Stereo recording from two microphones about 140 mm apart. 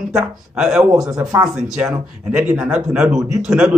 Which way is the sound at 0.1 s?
5° right (ahead or behind).